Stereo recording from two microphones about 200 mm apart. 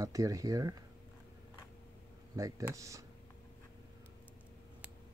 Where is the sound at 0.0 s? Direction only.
15° right (ahead or behind).